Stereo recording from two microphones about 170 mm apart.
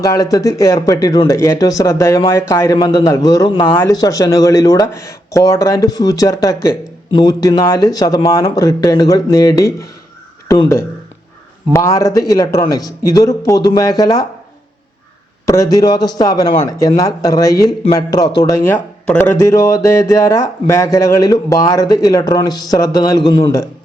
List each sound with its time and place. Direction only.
0.0 s speech: 20° left (ahead or behind)
15.4 s speech: 20° left (ahead or behind)